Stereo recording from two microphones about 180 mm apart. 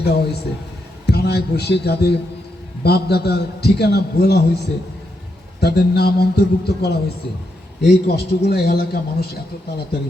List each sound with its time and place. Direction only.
0.0 s a man's voice: 65° left (ahead or behind)
5.5 s a man's voice: 65° left (ahead or behind)